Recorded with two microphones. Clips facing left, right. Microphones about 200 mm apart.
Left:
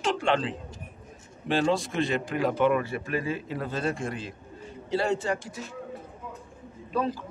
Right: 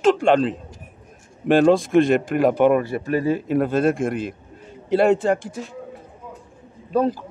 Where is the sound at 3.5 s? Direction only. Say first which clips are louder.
Right 11 dB; 55° right (ahead or behind).